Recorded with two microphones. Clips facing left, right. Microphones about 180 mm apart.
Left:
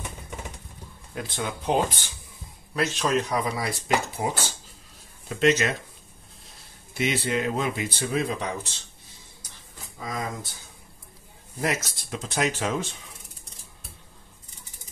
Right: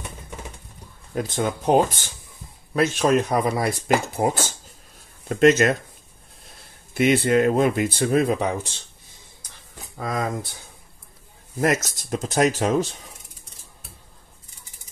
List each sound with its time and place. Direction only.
1.1 s speech: 45° right (ahead or behind)
6.9 s speech: 55° right (ahead or behind)
9.9 s speech: 60° right (ahead or behind)
11.6 s speech: 45° right (ahead or behind)